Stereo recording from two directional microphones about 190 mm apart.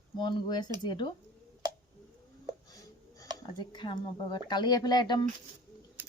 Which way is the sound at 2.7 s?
20° left (ahead or behind).